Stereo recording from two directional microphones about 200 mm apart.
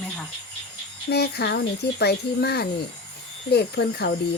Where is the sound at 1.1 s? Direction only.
55° left (ahead or behind).